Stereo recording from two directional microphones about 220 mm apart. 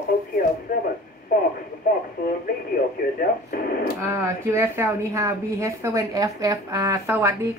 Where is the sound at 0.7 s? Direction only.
40° left (ahead or behind).